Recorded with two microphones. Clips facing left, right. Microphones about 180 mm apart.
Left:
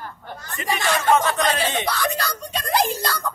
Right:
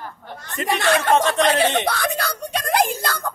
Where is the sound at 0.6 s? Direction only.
60° right (ahead or behind).